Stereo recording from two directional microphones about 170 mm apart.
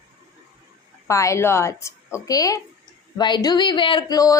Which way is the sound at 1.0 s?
15° left (ahead or behind).